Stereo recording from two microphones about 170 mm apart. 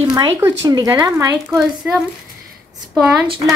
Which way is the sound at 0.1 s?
25° right (ahead or behind).